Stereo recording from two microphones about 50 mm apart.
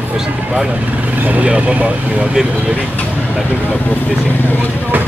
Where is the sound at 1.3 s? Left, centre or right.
Right.